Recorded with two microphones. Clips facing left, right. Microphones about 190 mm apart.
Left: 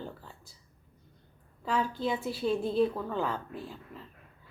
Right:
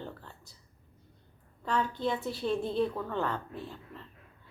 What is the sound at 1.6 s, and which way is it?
A woman's voice, 5° left (ahead or behind).